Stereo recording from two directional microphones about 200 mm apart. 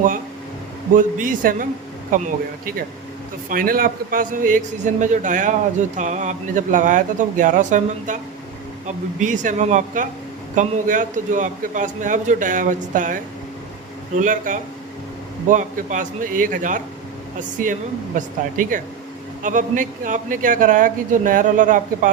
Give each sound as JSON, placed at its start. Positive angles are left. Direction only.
{"t": 0.9, "sound": "a man's voice", "side_deg": -40}
{"t": 9.2, "sound": "a man's voice", "side_deg": -40}
{"t": 14.2, "sound": "a man's voice", "side_deg": -40}